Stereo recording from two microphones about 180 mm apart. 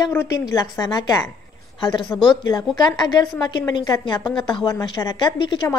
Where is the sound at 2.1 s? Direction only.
Centre (ahead or behind).